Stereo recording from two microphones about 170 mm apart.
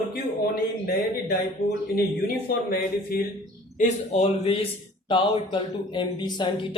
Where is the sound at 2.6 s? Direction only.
60° left (ahead or behind).